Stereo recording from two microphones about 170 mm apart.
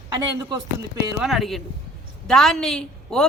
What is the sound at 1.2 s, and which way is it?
A woman's voice, centre (ahead or behind).